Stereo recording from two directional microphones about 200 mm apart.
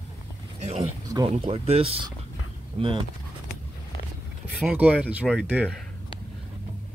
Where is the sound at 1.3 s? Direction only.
30° right (ahead or behind).